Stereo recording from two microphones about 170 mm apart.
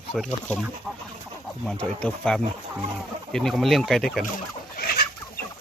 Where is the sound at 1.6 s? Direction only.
5° left (ahead or behind).